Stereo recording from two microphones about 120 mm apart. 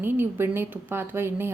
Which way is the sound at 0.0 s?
20° right (ahead or behind).